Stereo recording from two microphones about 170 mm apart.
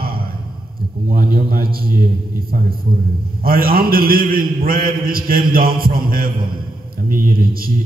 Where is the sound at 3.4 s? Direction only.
60° right (ahead or behind).